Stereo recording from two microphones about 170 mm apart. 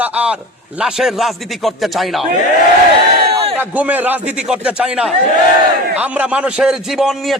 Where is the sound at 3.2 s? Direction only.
35° right (ahead or behind).